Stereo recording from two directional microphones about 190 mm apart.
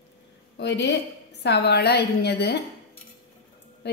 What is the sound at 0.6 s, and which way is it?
A woman's voice, 65° left (ahead or behind).